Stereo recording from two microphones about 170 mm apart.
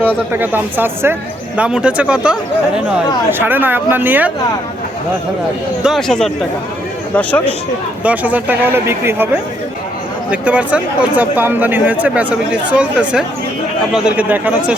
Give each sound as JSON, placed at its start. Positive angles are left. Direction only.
{"t": 0.3, "sound": "speech", "side_deg": -10}
{"t": 5.8, "sound": "speech", "side_deg": 0}
{"t": 8.0, "sound": "speech", "side_deg": -10}
{"t": 10.4, "sound": "speech", "side_deg": -10}